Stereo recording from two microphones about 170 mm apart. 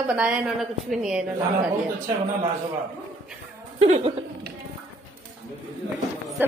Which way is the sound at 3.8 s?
35° right (ahead or behind).